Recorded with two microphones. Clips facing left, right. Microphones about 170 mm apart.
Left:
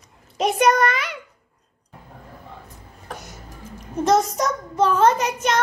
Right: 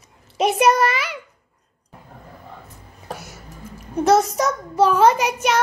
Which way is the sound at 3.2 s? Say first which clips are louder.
Right 1 dB; 5° right (ahead or behind).